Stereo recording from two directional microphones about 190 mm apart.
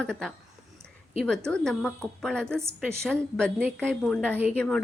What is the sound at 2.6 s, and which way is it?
Speech, 15° right (ahead or behind).